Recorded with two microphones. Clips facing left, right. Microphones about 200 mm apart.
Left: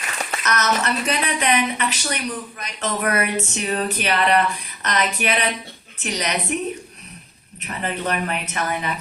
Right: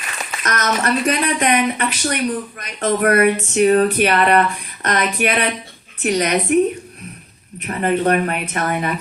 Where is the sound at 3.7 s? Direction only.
55° right (ahead or behind).